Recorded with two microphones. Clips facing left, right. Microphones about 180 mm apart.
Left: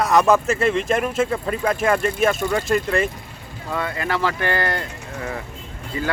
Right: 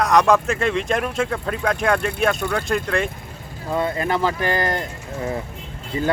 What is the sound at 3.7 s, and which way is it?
Speech, 25° right (ahead or behind).